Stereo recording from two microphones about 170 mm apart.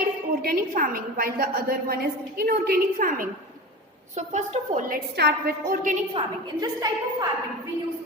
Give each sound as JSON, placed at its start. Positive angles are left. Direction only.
{"t": 0.4, "sound": "a woman's voice", "side_deg": -60}
{"t": 4.2, "sound": "a woman's voice", "side_deg": -45}
{"t": 6.1, "sound": "a woman's voice", "side_deg": -20}